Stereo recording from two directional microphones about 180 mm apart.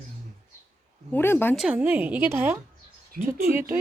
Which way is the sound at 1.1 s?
10° left (ahead or behind).